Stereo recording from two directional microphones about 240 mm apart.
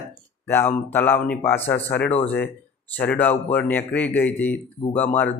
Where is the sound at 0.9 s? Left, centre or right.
Centre.